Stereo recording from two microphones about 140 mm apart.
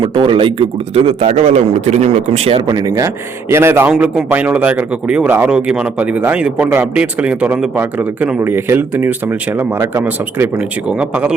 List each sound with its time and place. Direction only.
0.0 s a man's voice: 35° right (ahead or behind)
2.6 s speech: 25° right (ahead or behind)
3.9 s speech: 5° right (ahead or behind)